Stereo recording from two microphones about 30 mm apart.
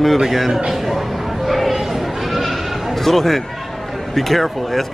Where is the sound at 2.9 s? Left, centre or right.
Centre.